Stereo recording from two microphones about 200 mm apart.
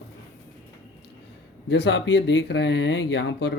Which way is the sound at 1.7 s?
65° left (ahead or behind).